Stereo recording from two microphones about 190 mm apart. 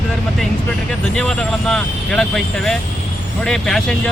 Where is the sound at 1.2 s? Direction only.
5° left (ahead or behind).